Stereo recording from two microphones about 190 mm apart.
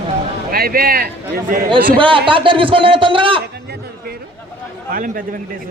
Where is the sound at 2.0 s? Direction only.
25° right (ahead or behind).